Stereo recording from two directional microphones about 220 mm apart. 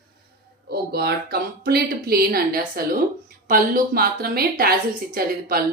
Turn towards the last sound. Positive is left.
turn(degrees=-40)  # may be behind; listen again after turning